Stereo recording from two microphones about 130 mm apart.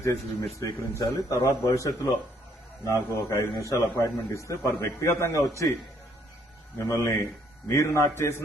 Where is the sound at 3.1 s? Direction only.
25° left (ahead or behind).